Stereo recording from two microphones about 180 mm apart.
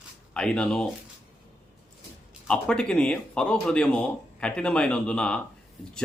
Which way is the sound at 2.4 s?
5° left (ahead or behind).